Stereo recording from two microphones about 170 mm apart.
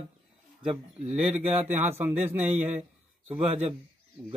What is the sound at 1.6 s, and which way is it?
Speech, 15° right (ahead or behind).